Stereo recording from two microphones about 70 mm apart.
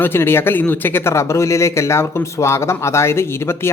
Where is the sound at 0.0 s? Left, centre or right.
Left.